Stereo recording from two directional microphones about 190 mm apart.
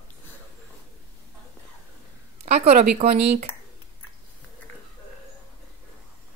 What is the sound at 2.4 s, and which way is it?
Speech, 35° right (ahead or behind).